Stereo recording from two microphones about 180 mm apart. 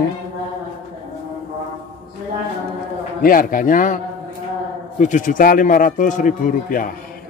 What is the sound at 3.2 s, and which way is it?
A man's voice, 50° left (ahead or behind).